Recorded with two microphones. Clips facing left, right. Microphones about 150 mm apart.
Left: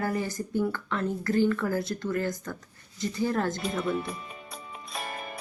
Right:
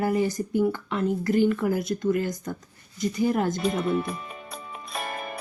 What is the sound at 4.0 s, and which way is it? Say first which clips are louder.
Music: right 5 dB; 65° right (ahead or behind).